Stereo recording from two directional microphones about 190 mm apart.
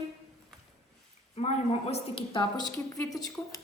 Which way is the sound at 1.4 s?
30° left (ahead or behind).